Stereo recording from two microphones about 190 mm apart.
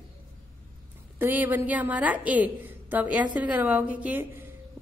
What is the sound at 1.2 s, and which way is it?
A woman's voice, 10° right (ahead or behind).